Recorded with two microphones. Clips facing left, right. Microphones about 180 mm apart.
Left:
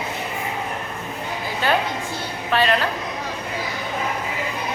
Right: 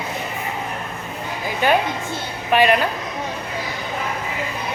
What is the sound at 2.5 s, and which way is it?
Speech, 15° right (ahead or behind).